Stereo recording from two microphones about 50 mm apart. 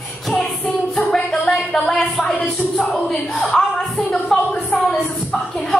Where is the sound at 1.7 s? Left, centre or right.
Centre.